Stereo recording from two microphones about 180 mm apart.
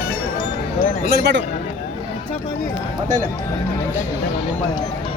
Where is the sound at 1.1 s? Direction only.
65° right (ahead or behind).